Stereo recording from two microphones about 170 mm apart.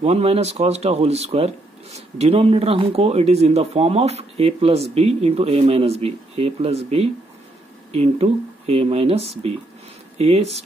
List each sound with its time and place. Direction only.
0.0 s speech: 35° right (ahead or behind)